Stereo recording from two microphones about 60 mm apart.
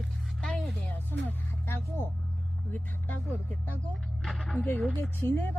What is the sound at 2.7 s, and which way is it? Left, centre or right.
Speech, left.